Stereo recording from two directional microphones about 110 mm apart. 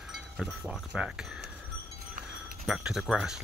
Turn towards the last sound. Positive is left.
turn(degrees=-5)  # may be behind; listen again after turning